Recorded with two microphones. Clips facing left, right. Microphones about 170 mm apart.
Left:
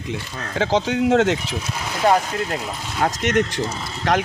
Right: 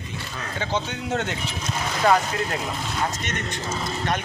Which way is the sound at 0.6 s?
90° left.